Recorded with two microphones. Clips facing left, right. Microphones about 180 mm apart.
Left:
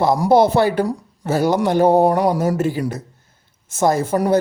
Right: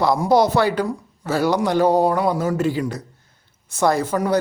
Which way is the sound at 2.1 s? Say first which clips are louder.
Left 3 dB; 40° left (ahead or behind).